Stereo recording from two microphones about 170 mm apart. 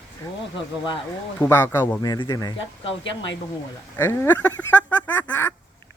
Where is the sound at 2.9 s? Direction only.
90° left.